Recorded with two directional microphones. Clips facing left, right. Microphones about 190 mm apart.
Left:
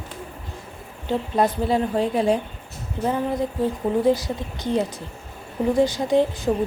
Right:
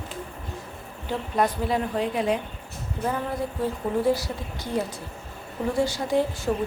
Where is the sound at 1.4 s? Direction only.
30° left (ahead or behind).